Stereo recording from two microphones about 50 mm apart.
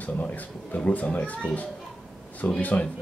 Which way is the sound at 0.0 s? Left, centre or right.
Left.